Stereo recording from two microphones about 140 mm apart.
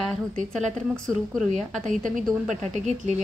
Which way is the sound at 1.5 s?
60° right (ahead or behind).